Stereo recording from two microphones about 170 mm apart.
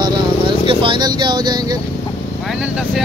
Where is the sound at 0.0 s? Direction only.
25° right (ahead or behind).